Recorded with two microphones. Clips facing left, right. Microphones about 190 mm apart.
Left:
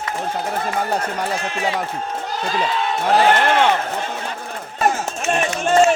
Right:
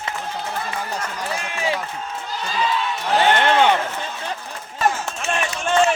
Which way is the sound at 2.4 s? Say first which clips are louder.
Left 1 dB; 55° left (ahead or behind).